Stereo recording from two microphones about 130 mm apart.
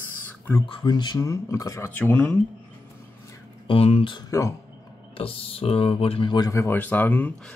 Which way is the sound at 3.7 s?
50° left (ahead or behind).